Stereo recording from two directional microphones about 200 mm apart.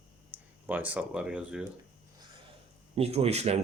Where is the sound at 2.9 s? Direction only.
30° right (ahead or behind).